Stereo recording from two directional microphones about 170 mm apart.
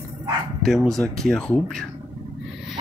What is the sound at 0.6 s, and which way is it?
Speech, centre (ahead or behind).